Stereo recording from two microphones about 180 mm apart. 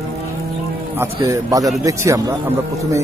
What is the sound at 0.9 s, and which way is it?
Speech, 20° right (ahead or behind).